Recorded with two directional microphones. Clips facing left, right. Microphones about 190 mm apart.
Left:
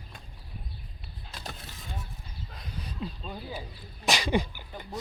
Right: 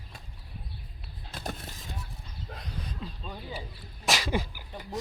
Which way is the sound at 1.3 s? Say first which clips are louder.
Right 5 dB; 50° right (ahead or behind).